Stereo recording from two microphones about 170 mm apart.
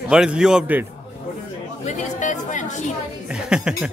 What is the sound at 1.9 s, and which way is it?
Speech, 45° left (ahead or behind).